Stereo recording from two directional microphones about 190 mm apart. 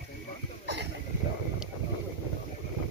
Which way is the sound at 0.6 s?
65° right (ahead or behind).